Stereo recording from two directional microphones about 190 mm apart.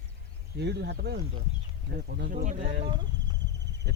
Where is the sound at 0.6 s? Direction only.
60° right (ahead or behind).